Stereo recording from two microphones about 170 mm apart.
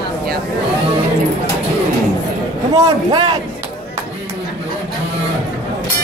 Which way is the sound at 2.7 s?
25° right (ahead or behind).